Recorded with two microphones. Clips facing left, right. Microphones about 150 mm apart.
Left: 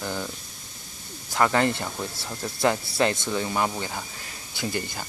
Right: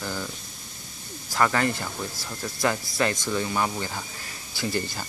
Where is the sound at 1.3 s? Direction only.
20° left (ahead or behind).